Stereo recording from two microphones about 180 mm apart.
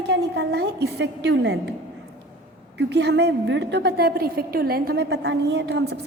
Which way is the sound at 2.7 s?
75° right (ahead or behind).